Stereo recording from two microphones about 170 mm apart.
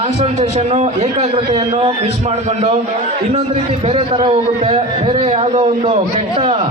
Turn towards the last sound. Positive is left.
turn(degrees=-35)  # may be behind; listen again after turning